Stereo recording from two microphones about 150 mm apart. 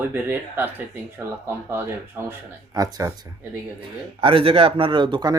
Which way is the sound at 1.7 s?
15° right (ahead or behind).